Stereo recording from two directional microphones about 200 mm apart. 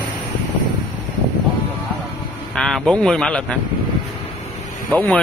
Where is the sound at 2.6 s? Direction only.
Centre (ahead or behind).